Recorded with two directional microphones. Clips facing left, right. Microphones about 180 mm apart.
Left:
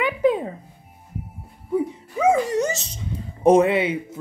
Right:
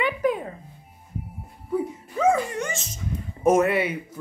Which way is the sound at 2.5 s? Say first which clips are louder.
Left 7 dB; 35° left (ahead or behind).